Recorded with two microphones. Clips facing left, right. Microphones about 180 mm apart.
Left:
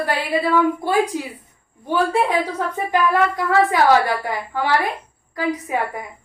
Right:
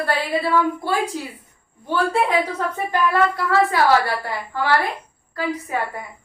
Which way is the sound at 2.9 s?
15° left (ahead or behind).